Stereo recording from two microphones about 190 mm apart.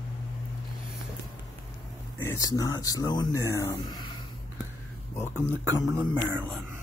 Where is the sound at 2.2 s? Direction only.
15° left (ahead or behind).